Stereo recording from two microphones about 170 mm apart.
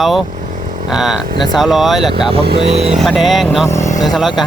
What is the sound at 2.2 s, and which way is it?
Speech, 35° right (ahead or behind).